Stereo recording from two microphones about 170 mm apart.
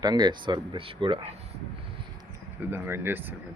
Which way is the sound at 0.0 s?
25° right (ahead or behind).